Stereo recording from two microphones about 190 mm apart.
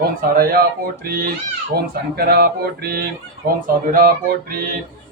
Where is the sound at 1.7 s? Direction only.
55° right (ahead or behind).